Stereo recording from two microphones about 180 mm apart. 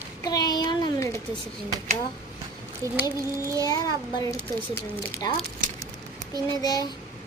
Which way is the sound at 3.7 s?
20° left (ahead or behind).